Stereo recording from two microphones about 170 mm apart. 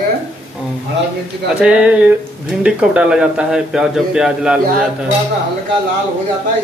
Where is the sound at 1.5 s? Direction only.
5° right (ahead or behind).